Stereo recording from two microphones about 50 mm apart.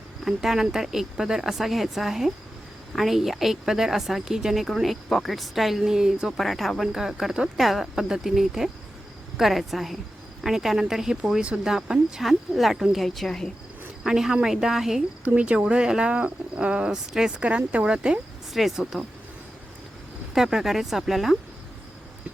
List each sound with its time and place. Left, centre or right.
0.3 s speech: centre
6.3 s speech: centre
6.8 s speech: centre
13.0 s speech: centre
14.0 s speech: centre
15.2 s speech: right
18.5 s speech: centre
20.3 s speech: centre